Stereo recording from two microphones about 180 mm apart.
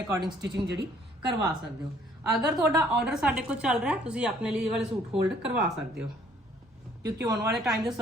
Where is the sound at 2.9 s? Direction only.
5° right (ahead or behind).